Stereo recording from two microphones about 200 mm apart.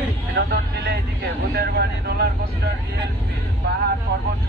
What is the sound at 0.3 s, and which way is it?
Speech, 55° right (ahead or behind).